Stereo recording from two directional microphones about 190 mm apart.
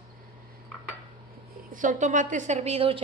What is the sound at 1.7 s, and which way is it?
A woman's voice, 45° right (ahead or behind).